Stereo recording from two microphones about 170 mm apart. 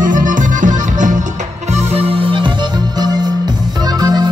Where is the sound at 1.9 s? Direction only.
30° right (ahead or behind).